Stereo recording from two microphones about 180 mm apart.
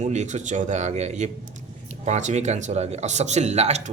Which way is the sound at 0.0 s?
40° right (ahead or behind).